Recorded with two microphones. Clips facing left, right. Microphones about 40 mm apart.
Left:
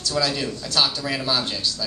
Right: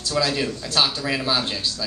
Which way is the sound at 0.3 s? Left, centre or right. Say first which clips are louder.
Right 2 dB; centre.